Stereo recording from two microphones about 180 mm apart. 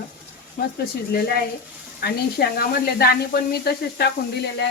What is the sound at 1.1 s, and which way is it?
Speech, 60° left (ahead or behind).